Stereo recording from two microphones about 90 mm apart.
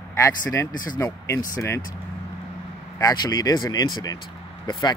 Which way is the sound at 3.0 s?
45° left (ahead or behind).